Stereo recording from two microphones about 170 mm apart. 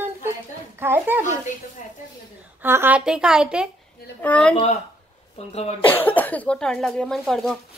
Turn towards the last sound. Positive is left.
turn(degrees=0)  # may be behind; listen again after turning